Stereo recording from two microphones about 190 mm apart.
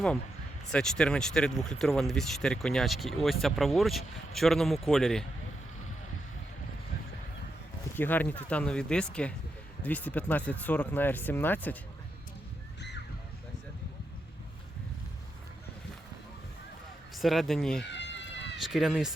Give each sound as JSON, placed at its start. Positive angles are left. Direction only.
{"t": 0.7, "sound": "speech", "side_deg": 5}
{"t": 7.9, "sound": "speech", "side_deg": 10}
{"t": 17.2, "sound": "speech", "side_deg": 0}
{"t": 17.8, "sound": "run", "side_deg": 70}
{"t": 18.6, "sound": "speech", "side_deg": 0}